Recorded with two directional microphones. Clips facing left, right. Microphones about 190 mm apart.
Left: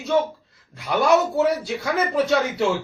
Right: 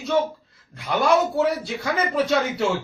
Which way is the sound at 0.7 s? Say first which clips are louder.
Left 1 dB; centre (ahead or behind).